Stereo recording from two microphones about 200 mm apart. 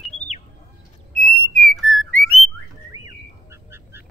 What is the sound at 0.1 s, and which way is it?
Bird, 35° left (ahead or behind).